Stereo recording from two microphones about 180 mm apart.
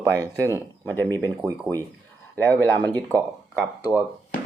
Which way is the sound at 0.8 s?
10° left (ahead or behind).